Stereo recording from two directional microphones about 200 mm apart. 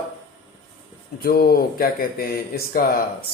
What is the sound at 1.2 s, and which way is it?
Speech, 50° left (ahead or behind).